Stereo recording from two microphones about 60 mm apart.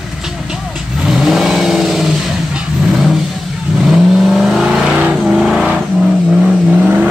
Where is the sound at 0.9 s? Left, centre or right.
Centre.